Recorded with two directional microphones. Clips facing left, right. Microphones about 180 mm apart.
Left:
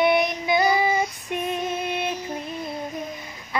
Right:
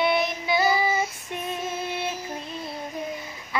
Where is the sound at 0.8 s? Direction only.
15° left (ahead or behind).